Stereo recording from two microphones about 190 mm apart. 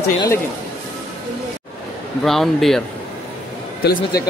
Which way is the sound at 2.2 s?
Centre (ahead or behind).